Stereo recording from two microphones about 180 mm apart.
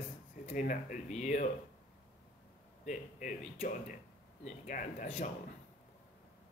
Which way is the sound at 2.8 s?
45° left (ahead or behind).